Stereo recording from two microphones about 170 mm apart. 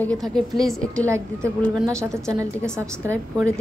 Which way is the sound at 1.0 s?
15° right (ahead or behind).